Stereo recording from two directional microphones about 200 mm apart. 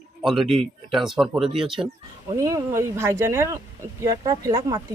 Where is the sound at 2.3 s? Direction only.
15° right (ahead or behind).